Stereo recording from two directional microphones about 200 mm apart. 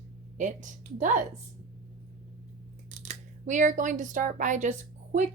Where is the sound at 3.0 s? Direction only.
40° right (ahead or behind).